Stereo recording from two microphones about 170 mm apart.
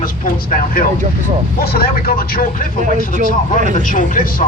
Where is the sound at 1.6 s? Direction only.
65° left (ahead or behind).